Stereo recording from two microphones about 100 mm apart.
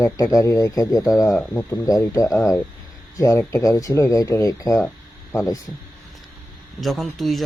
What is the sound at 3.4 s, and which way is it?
A man's voice, 30° left (ahead or behind).